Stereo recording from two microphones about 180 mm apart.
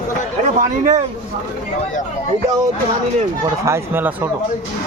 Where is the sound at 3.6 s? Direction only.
15° right (ahead or behind).